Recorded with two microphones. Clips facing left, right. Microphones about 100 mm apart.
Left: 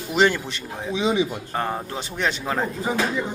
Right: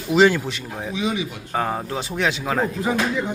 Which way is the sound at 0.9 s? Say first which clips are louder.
Left 4 dB; 25° left (ahead or behind).